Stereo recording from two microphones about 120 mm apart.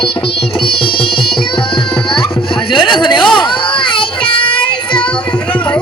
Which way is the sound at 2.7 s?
40° left (ahead or behind).